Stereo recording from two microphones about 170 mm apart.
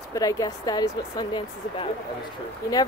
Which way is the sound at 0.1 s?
20° left (ahead or behind).